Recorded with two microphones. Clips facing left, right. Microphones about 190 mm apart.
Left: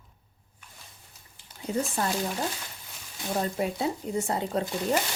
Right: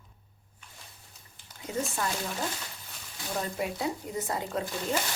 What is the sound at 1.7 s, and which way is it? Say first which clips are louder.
Speech: left 4 dB; 30° left (ahead or behind).